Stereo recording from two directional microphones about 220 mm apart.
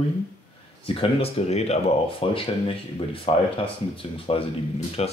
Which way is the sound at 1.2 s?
30° left (ahead or behind).